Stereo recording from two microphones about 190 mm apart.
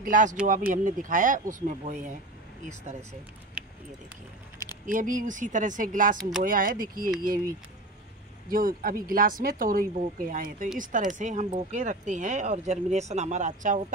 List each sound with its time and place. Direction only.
0.0 s speech: 45° right (ahead or behind)
4.6 s a sound: 15° right (ahead or behind)
4.9 s speech: 45° right (ahead or behind)
8.5 s speech: 50° right (ahead or behind)